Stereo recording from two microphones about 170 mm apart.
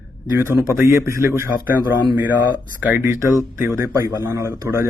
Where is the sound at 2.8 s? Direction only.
10° right (ahead or behind).